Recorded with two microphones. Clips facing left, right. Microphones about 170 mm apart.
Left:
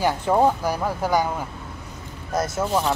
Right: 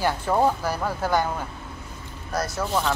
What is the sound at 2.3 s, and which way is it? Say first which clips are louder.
Speech: left 3 dB; 20° left (ahead or behind).